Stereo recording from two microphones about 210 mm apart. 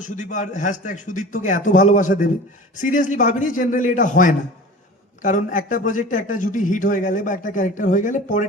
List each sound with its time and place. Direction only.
0.0 s a man's voice: 35° left (ahead or behind)